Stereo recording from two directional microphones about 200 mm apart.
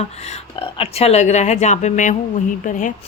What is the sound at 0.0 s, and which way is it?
A woman's voice, 30° left (ahead or behind).